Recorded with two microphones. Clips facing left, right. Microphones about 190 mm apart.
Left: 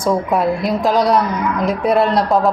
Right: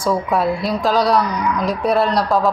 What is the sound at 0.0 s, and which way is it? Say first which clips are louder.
A woman's voice: left 2 dB; 20° left (ahead or behind).